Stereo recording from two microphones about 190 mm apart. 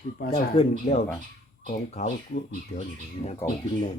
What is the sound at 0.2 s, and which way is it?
Speech, 50° left (ahead or behind).